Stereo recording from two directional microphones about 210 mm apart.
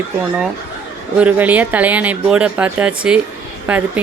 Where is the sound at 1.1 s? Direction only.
5° right (ahead or behind).